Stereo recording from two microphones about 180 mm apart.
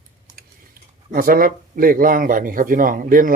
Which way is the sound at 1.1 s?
50° right (ahead or behind).